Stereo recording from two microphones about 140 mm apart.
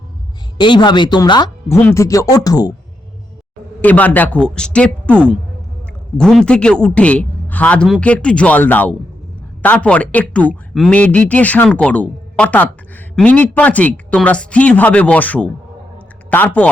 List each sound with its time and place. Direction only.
0.6 s speech: 35° left (ahead or behind)
1.7 s speech: 20° left (ahead or behind)
3.8 s speech: 10° left (ahead or behind)